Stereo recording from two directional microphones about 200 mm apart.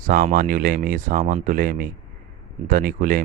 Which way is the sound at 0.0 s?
40° right (ahead or behind).